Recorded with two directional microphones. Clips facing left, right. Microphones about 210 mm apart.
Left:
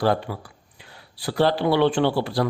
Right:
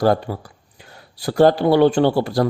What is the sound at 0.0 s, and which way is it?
Speech, 40° right (ahead or behind).